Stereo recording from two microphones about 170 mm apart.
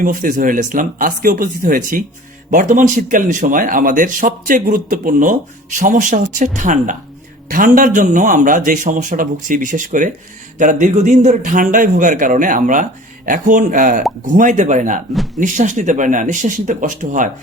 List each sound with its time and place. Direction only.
0.0 s speech: 50° right (ahead or behind)